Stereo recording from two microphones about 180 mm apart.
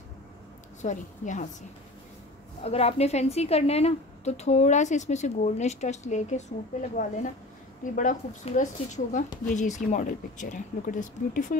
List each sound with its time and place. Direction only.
0.8 s speech: 45° left (ahead or behind)
2.6 s a woman's voice: 35° left (ahead or behind)